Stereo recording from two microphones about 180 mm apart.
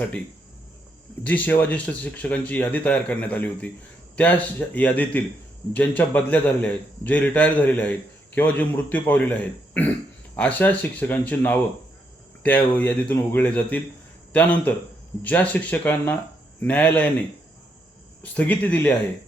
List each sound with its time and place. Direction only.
1.2 s speech: 10° left (ahead or behind)
18.2 s speech: 10° left (ahead or behind)